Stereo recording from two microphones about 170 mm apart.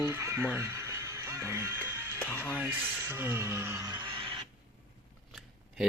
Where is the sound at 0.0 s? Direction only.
15° right (ahead or behind).